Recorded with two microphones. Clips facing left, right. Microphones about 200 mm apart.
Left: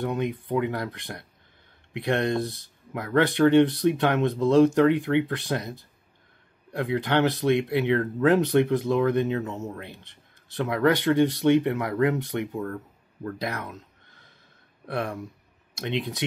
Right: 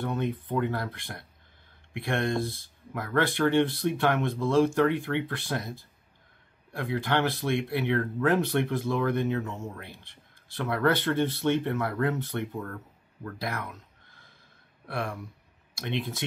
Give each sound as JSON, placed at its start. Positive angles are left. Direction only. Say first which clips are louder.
{"t": 0.0, "sound": "speech", "louder": "left 3 dB", "side_deg": 15}
{"t": 14.9, "sound": "speech", "louder": "left 4 dB", "side_deg": 20}